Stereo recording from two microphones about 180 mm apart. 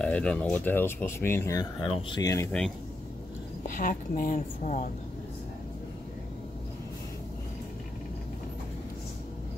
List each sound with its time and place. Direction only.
0.0 s speech: 5° left (ahead or behind)
3.6 s a woman's voice: 45° left (ahead or behind)